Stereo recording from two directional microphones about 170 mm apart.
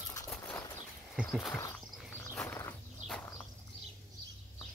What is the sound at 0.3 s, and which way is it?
Bird flight, 10° left (ahead or behind).